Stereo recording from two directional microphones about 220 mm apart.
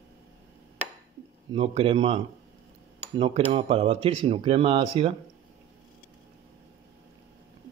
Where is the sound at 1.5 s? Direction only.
25° right (ahead or behind).